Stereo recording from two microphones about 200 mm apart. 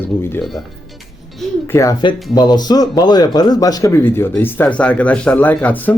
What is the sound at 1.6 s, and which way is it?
Speech, 15° left (ahead or behind).